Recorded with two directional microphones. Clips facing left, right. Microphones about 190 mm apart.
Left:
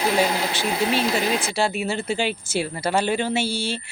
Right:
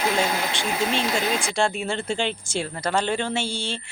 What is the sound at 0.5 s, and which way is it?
Speech, 5° left (ahead or behind).